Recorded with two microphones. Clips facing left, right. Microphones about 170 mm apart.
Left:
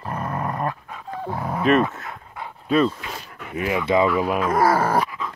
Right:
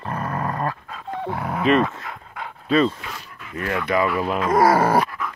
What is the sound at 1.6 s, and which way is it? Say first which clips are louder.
Speech: even; centre (ahead or behind).